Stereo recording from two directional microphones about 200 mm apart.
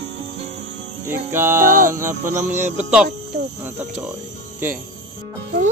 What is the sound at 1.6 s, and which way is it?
Music, 45° right (ahead or behind).